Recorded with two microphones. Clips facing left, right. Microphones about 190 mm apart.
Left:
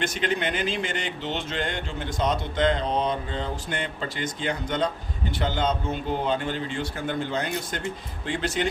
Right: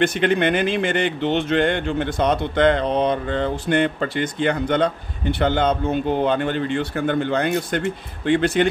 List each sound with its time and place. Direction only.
0.0 s speech: 60° right (ahead or behind)